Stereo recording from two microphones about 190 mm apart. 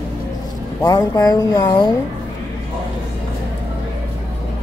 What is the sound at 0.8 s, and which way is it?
Speech, 20° left (ahead or behind).